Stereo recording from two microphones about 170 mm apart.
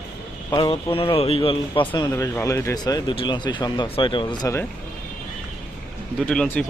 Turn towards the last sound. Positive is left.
turn(degrees=5)  # may be behind; listen again after turning